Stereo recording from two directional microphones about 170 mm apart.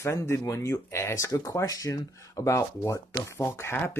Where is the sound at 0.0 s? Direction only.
15° left (ahead or behind).